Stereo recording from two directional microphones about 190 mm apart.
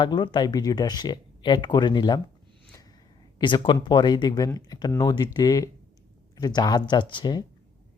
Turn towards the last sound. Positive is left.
turn(degrees=25)  # may be behind; listen again after turning